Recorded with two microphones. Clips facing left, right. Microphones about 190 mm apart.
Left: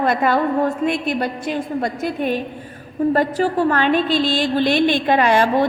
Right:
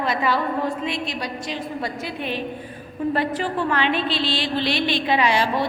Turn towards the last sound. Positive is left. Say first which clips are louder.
# left 5 dB
turn(degrees=50)  # may be behind; listen again after turning